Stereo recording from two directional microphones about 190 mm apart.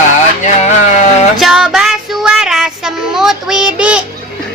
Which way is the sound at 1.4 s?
Centre (ahead or behind).